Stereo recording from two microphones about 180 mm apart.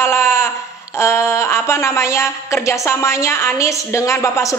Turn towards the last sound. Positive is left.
turn(degrees=15)  # may be behind; listen again after turning